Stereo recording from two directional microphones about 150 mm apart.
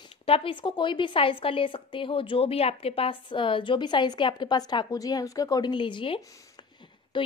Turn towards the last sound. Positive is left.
turn(degrees=30)  # may be behind; listen again after turning